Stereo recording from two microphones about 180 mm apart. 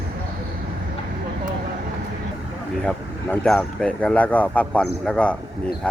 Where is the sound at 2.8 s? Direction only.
5° left (ahead or behind).